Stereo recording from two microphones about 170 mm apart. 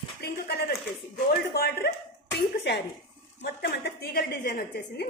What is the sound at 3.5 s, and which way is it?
A woman's voice, 75° left (ahead or behind).